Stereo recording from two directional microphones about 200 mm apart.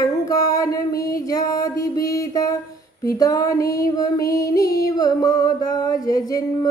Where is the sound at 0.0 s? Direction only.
15° left (ahead or behind).